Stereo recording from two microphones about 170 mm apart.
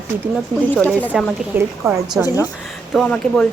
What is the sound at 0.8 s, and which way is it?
Speech, 10° left (ahead or behind).